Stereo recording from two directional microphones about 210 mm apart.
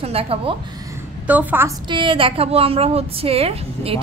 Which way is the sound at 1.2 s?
10° right (ahead or behind).